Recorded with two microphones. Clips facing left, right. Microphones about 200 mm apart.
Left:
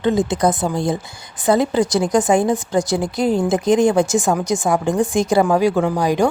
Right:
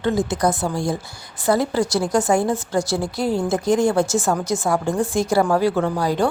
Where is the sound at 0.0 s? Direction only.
20° left (ahead or behind).